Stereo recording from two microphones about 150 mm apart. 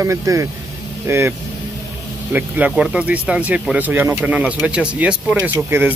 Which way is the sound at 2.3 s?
10° right (ahead or behind).